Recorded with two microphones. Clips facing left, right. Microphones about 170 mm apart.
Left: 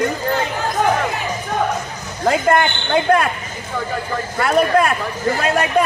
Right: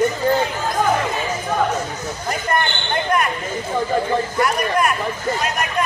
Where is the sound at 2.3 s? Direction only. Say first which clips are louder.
Left 7 dB; 90° left.